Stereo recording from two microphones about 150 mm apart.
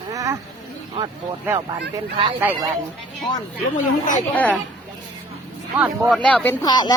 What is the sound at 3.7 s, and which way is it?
Speech, 55° left (ahead or behind).